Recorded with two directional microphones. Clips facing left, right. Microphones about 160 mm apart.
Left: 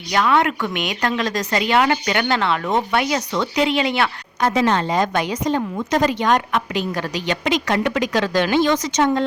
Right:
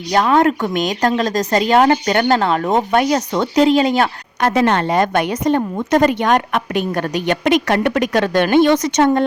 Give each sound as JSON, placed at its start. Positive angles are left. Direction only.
{"t": 0.1, "sound": "speech", "side_deg": -40}
{"t": 4.4, "sound": "a woman's voice", "side_deg": -60}